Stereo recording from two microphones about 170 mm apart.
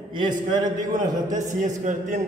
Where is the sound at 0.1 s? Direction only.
30° right (ahead or behind).